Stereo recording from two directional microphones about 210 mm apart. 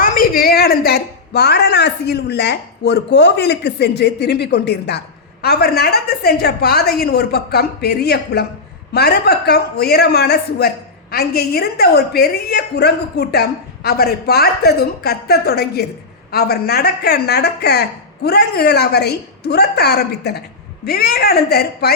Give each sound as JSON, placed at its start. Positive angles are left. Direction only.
{"t": 0.0, "sound": "a woman's voice", "side_deg": 40}